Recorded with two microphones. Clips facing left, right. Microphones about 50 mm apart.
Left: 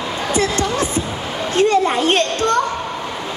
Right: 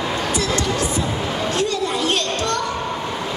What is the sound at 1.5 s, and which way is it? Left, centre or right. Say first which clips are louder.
Children playing: left 10 dB; left.